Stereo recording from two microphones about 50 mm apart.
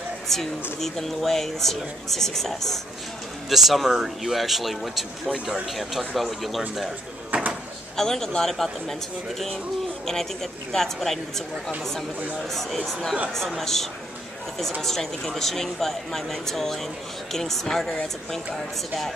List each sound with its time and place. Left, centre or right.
0.3 s speech: centre
7.3 s a sound: right
7.9 s speech: centre
10.0 s speech: centre